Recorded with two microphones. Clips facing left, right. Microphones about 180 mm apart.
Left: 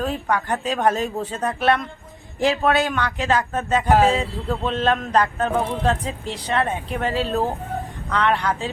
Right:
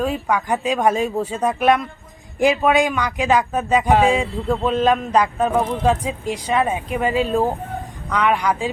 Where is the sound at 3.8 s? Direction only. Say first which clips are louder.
Left 1 dB; centre (ahead or behind).